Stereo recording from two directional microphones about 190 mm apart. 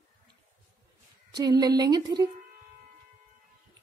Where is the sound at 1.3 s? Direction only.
20° right (ahead or behind).